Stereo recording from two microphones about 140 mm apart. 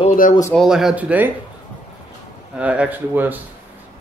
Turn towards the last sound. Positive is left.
turn(degrees=-15)  # may be behind; listen again after turning